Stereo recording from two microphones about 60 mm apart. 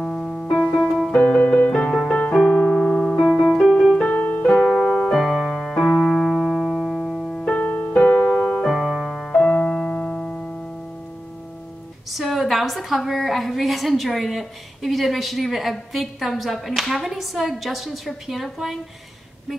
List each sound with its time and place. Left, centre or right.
0.0 s piano: centre
0.6 s music: centre
1.1 s music: centre
2.3 s piano: centre
3.5 s music: centre
4.1 s music: left
4.6 s piano: centre
5.1 s music: centre
5.8 s piano: centre
7.5 s music: left
8.0 s keyboard: centre
8.6 s music: centre
9.3 s music: centre
12.1 s a woman's voice: centre